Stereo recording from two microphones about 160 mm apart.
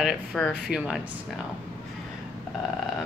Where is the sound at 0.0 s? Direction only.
5° left (ahead or behind).